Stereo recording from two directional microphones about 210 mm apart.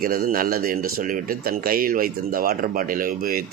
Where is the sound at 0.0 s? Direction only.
45° right (ahead or behind).